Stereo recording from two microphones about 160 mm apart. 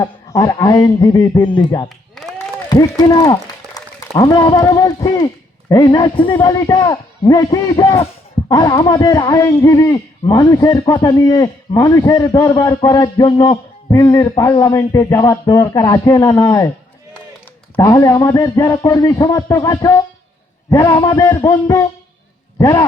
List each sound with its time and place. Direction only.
0.0 s a man's voice: 20° left (ahead or behind)
3.0 s a man's voice: 25° left (ahead or behind)
17.7 s a man's voice: 20° left (ahead or behind)